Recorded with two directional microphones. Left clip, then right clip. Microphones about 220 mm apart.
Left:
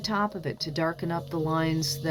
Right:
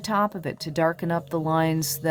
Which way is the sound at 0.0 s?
35° right (ahead or behind).